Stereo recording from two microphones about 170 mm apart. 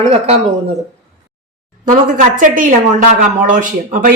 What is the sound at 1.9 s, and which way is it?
A woman's voice, 50° right (ahead or behind).